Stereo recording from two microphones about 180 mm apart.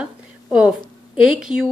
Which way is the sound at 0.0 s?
5° right (ahead or behind).